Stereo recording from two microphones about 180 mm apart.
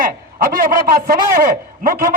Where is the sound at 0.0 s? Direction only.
50° right (ahead or behind).